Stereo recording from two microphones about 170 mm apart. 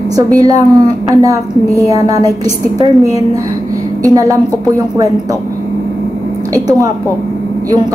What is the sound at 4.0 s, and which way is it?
Speech, 20° right (ahead or behind).